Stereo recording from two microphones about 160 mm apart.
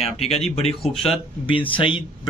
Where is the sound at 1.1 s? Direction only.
35° left (ahead or behind).